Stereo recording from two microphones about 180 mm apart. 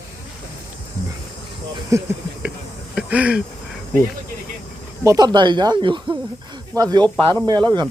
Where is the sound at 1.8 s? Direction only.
15° right (ahead or behind).